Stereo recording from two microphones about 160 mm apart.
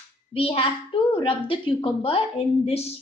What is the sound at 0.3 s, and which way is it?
A woman's voice, 35° left (ahead or behind).